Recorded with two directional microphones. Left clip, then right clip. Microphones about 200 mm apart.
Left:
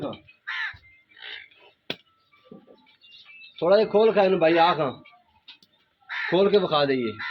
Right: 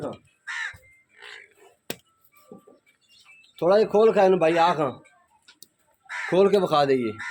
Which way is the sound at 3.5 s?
55° right (ahead or behind).